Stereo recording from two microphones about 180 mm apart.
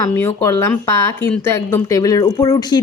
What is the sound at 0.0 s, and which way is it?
Speech, 10° left (ahead or behind).